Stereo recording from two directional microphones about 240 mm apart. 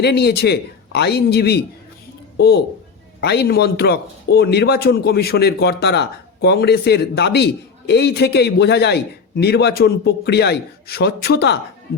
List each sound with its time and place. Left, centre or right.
0.0 s a man's voice: left
3.2 s a man's voice: left